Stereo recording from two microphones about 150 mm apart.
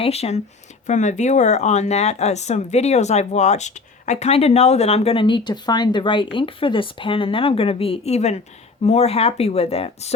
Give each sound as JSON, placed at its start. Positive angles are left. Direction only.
{"t": 0.0, "sound": "speech", "side_deg": 45}